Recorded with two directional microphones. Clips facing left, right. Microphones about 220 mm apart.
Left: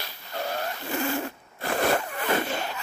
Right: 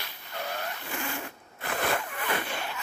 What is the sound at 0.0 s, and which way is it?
Zipper, 35° left (ahead or behind).